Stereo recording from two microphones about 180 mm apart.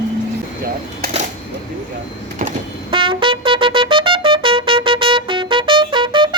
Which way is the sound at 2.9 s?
30° right (ahead or behind).